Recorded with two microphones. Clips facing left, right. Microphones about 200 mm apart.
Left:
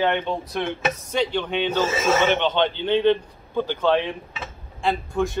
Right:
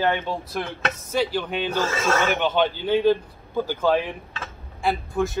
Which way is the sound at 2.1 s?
20° left (ahead or behind).